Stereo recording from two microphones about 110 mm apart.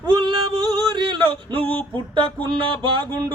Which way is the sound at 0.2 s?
50° right (ahead or behind).